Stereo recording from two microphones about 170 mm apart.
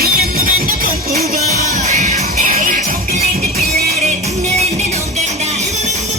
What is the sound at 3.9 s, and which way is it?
Music, 40° right (ahead or behind).